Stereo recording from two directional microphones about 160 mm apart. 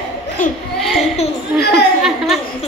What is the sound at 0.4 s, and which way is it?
Speech, 55° left (ahead or behind).